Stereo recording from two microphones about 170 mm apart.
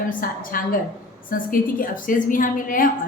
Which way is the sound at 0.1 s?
55° left (ahead or behind).